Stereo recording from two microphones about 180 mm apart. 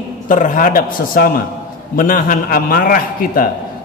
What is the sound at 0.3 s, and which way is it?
A man's voice, 45° left (ahead or behind).